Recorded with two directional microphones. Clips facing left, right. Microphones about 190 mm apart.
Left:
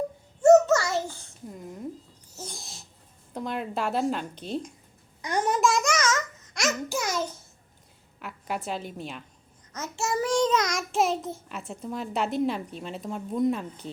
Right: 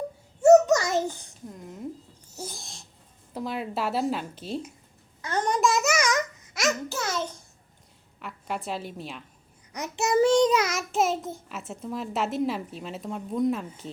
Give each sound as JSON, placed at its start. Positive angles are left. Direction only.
{"t": 0.4, "sound": "a sound", "side_deg": -15}
{"t": 1.5, "sound": "a sound", "side_deg": 0}
{"t": 2.5, "sound": "owl", "side_deg": 0}
{"t": 3.3, "sound": "a child's voice", "side_deg": -5}
{"t": 5.2, "sound": "babbling", "side_deg": 10}
{"t": 6.5, "sound": "babbling", "side_deg": 0}
{"t": 6.8, "sound": "babbling", "side_deg": 10}
{"t": 8.2, "sound": "a woman's voice", "side_deg": 0}
{"t": 9.7, "sound": "child singing", "side_deg": -15}
{"t": 10.5, "sound": "a child's voice", "side_deg": -5}